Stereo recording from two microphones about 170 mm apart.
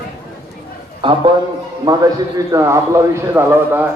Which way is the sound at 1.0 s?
30° right (ahead or behind).